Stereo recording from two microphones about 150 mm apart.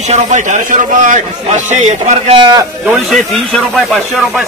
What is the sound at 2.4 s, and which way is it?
Speech, 30° right (ahead or behind).